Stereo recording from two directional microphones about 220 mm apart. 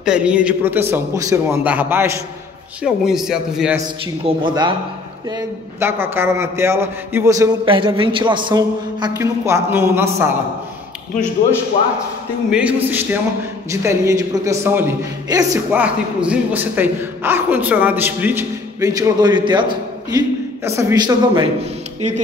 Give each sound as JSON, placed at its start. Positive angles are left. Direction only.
{"t": 0.0, "sound": "a man's voice", "side_deg": -5}
{"t": 4.4, "sound": "speech", "side_deg": -20}
{"t": 5.8, "sound": "a man's voice", "side_deg": -10}
{"t": 12.4, "sound": "a man's voice", "side_deg": -5}